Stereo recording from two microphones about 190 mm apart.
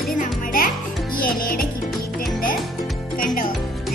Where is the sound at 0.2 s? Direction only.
45° left (ahead or behind).